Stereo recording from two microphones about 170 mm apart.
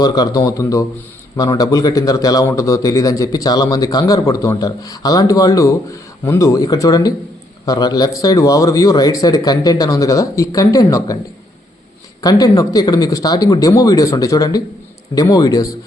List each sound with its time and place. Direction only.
0.0 s a man's voice: 20° left (ahead or behind)
12.2 s a man's voice: 20° left (ahead or behind)